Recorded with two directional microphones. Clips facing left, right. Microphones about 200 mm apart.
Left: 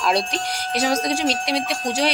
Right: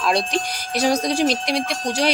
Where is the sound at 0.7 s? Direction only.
40° right (ahead or behind).